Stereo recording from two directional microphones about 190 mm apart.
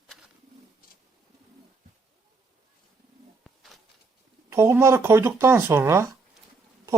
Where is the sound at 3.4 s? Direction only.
Centre (ahead or behind).